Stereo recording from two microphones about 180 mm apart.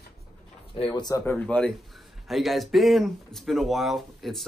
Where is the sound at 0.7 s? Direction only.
25° left (ahead or behind).